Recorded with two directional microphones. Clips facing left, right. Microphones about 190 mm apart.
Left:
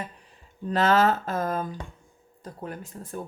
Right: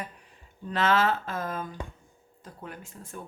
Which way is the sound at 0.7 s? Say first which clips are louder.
Left 4 dB; 40° left (ahead or behind).